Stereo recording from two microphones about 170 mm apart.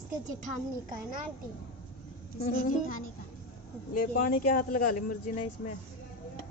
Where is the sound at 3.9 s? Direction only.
55° left (ahead or behind).